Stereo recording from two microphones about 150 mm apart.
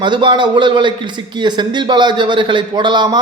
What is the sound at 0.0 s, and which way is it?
A man's voice, 30° right (ahead or behind).